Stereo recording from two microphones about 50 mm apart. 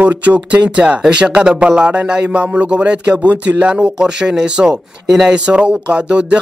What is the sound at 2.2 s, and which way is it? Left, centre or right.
Speech, right.